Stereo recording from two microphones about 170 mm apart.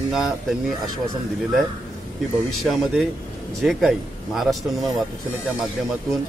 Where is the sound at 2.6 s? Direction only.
Centre (ahead or behind).